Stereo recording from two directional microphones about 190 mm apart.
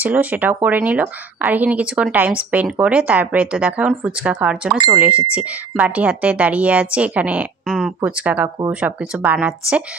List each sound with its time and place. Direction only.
0.0 s speech: 10° right (ahead or behind)